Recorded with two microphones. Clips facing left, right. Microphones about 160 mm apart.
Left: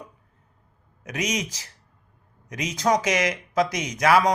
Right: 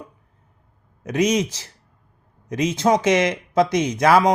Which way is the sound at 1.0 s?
30° right (ahead or behind).